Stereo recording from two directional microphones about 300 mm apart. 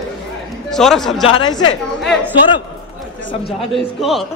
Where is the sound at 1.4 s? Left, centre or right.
Centre.